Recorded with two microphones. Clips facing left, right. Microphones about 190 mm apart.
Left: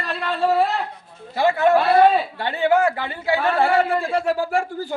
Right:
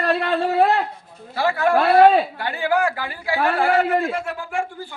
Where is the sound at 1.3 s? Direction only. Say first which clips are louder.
Left 2 dB; 20° left (ahead or behind).